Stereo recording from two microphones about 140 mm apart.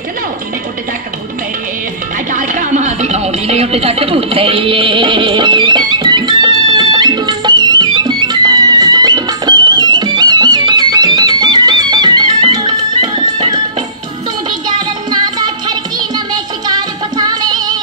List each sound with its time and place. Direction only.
2.3 s music: 65° right (ahead or behind); by 13.6 s 35° right (ahead or behind)
15.0 s music: 30° right (ahead or behind)